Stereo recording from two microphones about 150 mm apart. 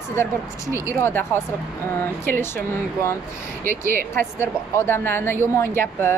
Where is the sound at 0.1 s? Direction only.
15° left (ahead or behind).